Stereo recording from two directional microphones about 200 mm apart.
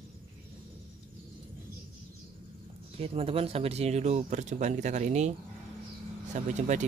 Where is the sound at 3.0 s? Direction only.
30° right (ahead or behind).